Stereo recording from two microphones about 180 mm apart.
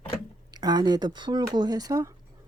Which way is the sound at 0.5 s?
20° right (ahead or behind).